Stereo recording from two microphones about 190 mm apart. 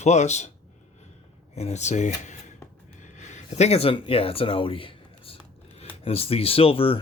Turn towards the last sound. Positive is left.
turn(degrees=30)  # may be behind; listen again after turning